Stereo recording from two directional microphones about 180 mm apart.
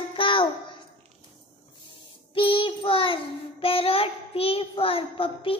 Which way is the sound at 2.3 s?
30° left (ahead or behind).